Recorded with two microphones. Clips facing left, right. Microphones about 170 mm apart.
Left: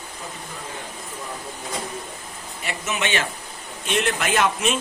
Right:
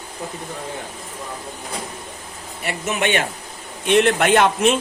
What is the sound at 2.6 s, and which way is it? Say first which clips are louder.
A man's voice: right 5 dB; 55° right (ahead or behind).